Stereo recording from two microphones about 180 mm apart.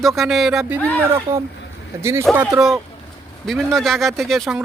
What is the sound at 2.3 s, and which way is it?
Speech, centre (ahead or behind).